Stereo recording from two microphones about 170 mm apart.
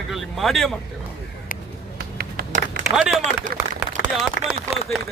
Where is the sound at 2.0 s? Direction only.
60° right (ahead or behind).